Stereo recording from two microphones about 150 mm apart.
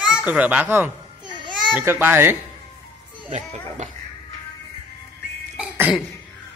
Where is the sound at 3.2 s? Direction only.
50° right (ahead or behind).